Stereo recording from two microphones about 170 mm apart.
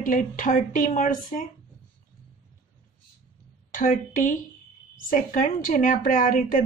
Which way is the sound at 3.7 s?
50° left (ahead or behind).